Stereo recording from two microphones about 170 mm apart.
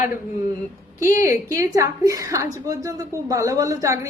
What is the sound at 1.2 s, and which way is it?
Speech, 15° right (ahead or behind).